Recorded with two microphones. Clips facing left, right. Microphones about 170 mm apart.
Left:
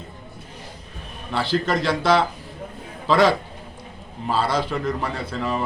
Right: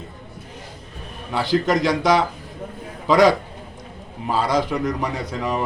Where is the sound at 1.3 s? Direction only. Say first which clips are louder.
Right 3 dB; 15° right (ahead or behind).